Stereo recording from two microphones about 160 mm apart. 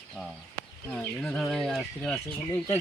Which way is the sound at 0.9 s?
5° left (ahead or behind).